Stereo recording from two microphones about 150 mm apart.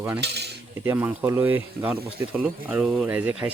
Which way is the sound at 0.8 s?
15° right (ahead or behind).